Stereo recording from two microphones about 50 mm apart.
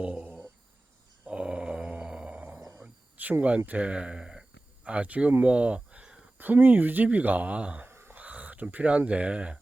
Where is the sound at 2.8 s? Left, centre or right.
Right.